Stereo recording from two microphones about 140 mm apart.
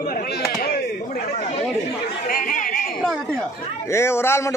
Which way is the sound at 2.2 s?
85° left.